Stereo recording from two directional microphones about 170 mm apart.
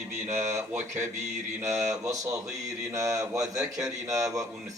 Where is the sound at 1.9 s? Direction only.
20° right (ahead or behind).